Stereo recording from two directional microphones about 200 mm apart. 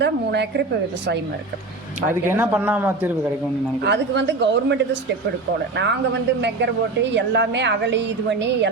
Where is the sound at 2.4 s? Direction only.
10° right (ahead or behind).